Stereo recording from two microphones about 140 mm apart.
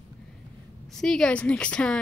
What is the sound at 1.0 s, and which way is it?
A woman's voice, 5° left (ahead or behind).